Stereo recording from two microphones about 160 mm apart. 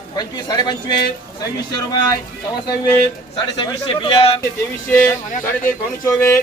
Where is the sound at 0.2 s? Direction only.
25° left (ahead or behind).